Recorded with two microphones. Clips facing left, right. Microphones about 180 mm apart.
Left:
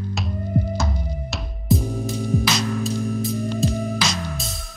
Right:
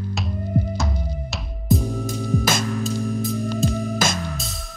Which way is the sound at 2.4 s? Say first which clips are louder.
Even; 50° right (ahead or behind).